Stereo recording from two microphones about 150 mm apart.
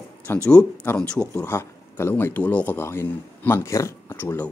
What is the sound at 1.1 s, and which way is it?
Speech, 10° left (ahead or behind).